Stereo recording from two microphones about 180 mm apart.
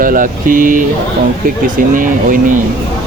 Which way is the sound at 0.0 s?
50° right (ahead or behind).